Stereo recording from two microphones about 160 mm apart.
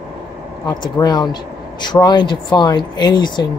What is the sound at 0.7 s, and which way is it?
Speech, 25° left (ahead or behind).